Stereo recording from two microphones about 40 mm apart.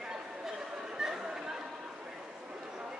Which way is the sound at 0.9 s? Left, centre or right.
Centre.